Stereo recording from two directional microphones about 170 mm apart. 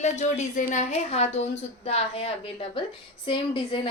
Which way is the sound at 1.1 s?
35° left (ahead or behind).